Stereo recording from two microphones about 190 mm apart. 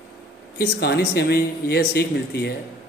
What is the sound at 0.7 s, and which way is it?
A man's voice, 55° left (ahead or behind).